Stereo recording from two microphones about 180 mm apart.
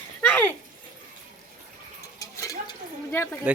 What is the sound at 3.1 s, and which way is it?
Speech, 15° left (ahead or behind).